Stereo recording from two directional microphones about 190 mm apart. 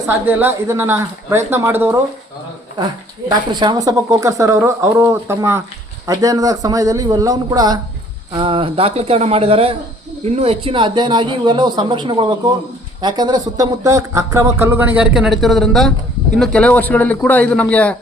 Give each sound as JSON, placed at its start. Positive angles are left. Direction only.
{"t": 0.1, "sound": "speech", "side_deg": -10}
{"t": 3.5, "sound": "a man's voice", "side_deg": -25}